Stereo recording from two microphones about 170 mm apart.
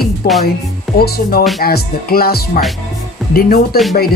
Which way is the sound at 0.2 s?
60° left (ahead or behind).